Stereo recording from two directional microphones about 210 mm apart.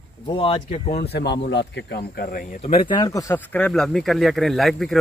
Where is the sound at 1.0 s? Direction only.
50° left (ahead or behind).